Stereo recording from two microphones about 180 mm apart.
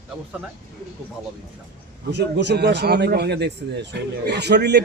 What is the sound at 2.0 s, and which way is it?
A man's voice, 75° right (ahead or behind).